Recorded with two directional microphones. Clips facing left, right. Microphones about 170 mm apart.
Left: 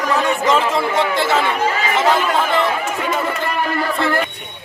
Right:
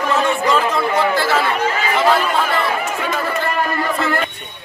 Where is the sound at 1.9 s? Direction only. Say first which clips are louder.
Right 1 dB; 20° left (ahead or behind).